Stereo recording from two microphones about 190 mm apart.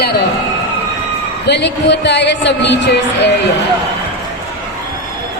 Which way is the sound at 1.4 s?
65° left (ahead or behind).